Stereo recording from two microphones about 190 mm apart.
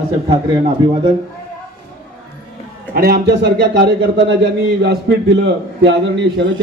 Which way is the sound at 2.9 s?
50° right (ahead or behind).